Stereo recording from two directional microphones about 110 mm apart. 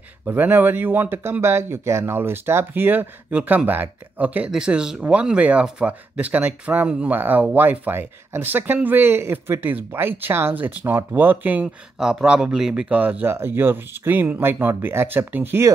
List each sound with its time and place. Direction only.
0.2 s speech: 15° right (ahead or behind)